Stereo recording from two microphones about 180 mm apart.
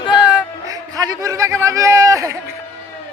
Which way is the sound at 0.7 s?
20° right (ahead or behind).